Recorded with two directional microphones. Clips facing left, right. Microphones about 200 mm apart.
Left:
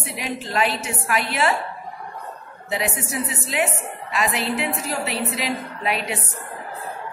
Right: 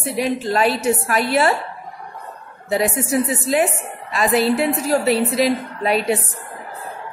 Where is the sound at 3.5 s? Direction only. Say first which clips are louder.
Right 5 dB; 35° right (ahead or behind).